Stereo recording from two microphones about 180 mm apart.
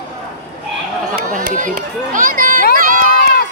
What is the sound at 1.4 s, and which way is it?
Run, 50° right (ahead or behind).